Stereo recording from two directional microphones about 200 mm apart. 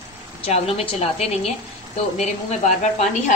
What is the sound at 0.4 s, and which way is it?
A woman's voice, 30° left (ahead or behind).